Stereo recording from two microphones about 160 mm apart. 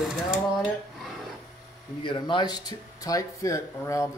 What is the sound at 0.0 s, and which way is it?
Mechanisms, centre (ahead or behind).